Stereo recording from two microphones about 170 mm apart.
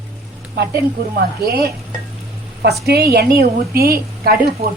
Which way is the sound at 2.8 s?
65° right (ahead or behind).